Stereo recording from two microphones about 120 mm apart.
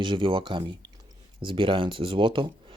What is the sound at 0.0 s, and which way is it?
Speech, 40° right (ahead or behind).